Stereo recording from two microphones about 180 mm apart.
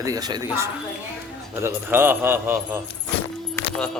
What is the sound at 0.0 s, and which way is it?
A man's voice, 20° right (ahead or behind).